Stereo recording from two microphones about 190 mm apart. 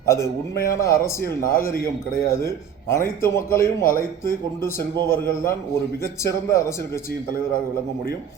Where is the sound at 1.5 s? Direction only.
50° left (ahead or behind).